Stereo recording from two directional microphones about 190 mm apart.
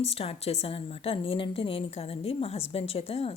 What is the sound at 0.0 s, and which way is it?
A woman's voice, 30° left (ahead or behind).